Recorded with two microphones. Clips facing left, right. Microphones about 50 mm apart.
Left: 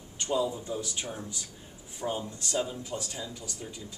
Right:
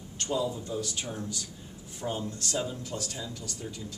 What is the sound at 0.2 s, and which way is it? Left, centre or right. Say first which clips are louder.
A man's voice: left 1 dB; centre.